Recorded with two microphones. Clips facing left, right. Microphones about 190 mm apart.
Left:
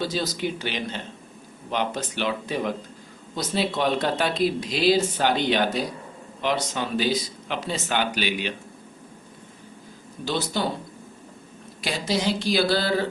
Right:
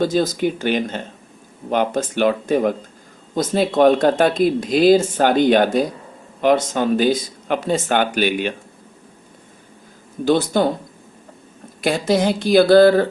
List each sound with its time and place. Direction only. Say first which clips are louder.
0.0 s speech: right 9 dB; 50° right (ahead or behind)
10.2 s speech: right 10 dB; 50° right (ahead or behind)
11.8 s speech: right 9 dB; 50° right (ahead or behind)